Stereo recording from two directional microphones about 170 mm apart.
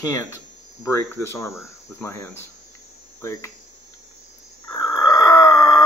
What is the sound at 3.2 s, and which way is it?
Hum, 15° left (ahead or behind).